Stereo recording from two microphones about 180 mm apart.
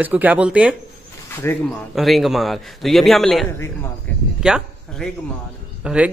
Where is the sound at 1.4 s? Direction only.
10° left (ahead or behind).